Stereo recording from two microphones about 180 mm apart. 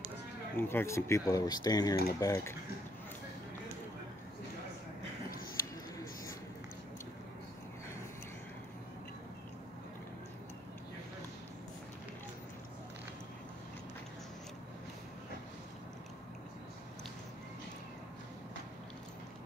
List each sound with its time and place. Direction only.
0.6 s speech: 10° left (ahead or behind)